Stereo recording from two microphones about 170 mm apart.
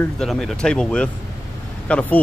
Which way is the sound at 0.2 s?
Centre (ahead or behind).